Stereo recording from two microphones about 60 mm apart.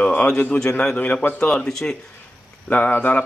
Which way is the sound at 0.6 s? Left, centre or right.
Centre.